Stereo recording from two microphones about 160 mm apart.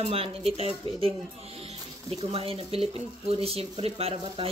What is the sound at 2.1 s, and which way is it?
Speech, 35° right (ahead or behind).